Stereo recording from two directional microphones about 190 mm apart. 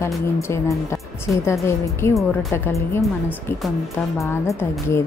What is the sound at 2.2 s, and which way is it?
Speech, centre (ahead or behind).